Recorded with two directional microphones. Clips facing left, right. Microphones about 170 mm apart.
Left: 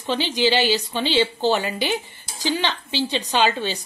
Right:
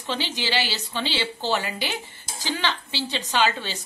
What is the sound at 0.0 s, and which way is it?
A woman's voice, 15° left (ahead or behind).